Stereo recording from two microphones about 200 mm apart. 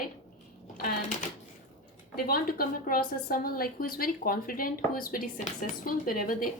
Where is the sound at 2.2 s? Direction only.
45° left (ahead or behind).